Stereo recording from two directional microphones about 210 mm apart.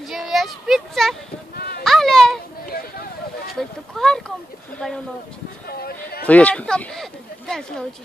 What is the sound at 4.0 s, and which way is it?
Speech, centre (ahead or behind).